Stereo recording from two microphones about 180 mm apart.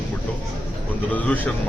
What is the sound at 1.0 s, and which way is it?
Speech, 10° left (ahead or behind).